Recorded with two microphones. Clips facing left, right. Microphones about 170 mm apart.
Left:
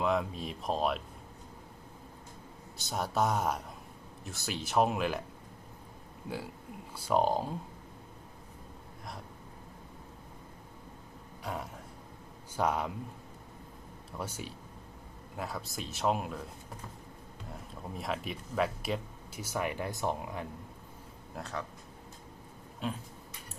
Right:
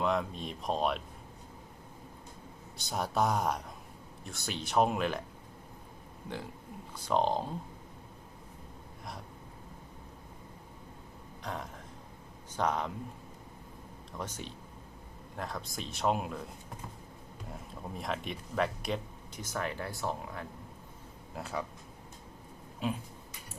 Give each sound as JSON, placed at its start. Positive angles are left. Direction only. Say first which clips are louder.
{"t": 0.0, "sound": "speech", "louder": "left 1 dB", "side_deg": 0}
{"t": 2.7, "sound": "speech", "louder": "even", "side_deg": 0}
{"t": 6.2, "sound": "speech", "louder": "left 2 dB", "side_deg": 5}
{"t": 11.4, "sound": "speech", "louder": "left 1 dB", "side_deg": 10}
{"t": 14.2, "sound": "speech", "louder": "left 1 dB", "side_deg": 10}
{"t": 17.5, "sound": "speech", "louder": "even", "side_deg": 0}
{"t": 21.3, "sound": "speech", "louder": "right 2 dB", "side_deg": -10}
{"t": 22.8, "sound": "speech", "louder": "right 2 dB", "side_deg": -5}